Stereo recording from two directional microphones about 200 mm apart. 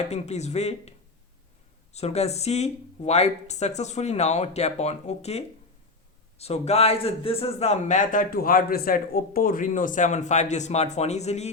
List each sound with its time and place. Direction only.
0.1 s a man's voice: 35° left (ahead or behind)
6.4 s a man's voice: 30° left (ahead or behind)